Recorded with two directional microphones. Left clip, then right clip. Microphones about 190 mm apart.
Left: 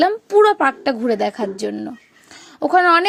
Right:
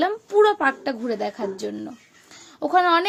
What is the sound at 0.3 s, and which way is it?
A woman's voice, 35° left (ahead or behind).